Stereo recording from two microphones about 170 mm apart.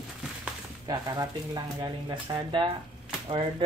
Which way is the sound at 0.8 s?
25° right (ahead or behind).